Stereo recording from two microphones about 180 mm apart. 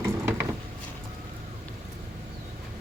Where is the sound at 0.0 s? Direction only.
15° right (ahead or behind).